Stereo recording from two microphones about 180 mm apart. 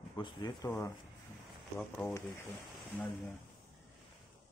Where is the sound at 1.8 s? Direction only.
10° left (ahead or behind).